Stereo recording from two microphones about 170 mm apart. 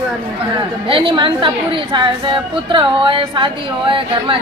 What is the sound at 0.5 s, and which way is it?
A woman's voice, 30° right (ahead or behind).